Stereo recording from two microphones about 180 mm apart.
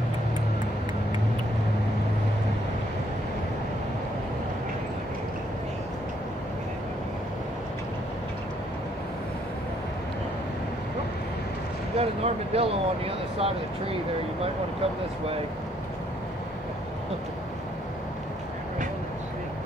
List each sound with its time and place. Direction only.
12.0 s speech: 35° right (ahead or behind)